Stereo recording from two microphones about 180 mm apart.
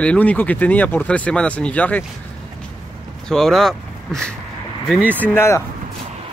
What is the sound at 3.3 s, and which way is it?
Speech, centre (ahead or behind).